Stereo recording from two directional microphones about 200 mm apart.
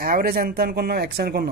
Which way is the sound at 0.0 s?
50° right (ahead or behind).